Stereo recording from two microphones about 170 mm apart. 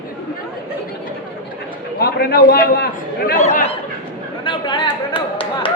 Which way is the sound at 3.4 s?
40° left (ahead or behind).